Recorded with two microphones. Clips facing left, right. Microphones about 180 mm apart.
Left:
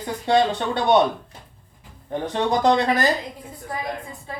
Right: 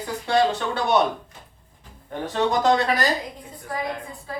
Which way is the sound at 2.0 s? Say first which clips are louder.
Left 1 dB; 20° left (ahead or behind).